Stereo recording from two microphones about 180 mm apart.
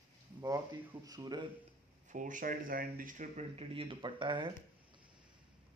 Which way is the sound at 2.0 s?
45° right (ahead or behind).